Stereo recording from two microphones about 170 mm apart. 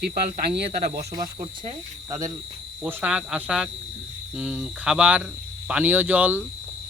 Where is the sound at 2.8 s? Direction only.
10° right (ahead or behind).